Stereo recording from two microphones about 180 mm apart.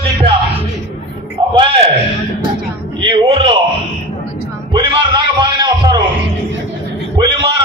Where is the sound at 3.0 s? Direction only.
30° right (ahead or behind).